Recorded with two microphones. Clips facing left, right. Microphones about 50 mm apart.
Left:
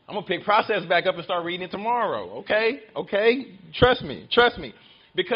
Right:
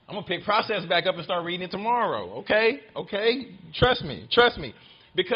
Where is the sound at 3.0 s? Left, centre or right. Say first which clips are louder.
Left 7 dB; left.